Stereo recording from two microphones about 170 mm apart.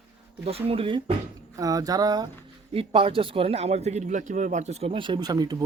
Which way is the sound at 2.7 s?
35° right (ahead or behind).